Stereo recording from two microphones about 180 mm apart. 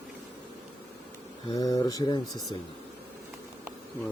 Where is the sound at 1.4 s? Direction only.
20° left (ahead or behind).